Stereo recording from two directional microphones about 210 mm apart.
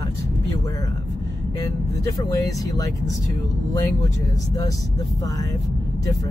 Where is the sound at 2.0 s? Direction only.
15° left (ahead or behind).